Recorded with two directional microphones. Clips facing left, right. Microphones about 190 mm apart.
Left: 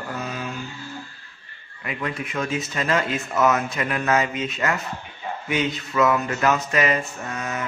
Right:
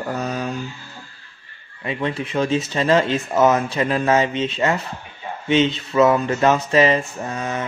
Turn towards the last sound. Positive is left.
turn(degrees=-30)  # may be behind; listen again after turning